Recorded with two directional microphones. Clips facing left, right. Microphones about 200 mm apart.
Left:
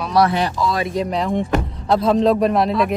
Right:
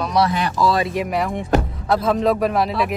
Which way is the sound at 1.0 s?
5° right (ahead or behind).